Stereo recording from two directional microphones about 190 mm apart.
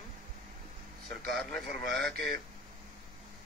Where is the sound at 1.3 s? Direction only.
Centre (ahead or behind).